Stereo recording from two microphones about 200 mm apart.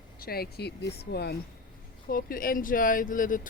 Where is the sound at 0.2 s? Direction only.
50° left (ahead or behind).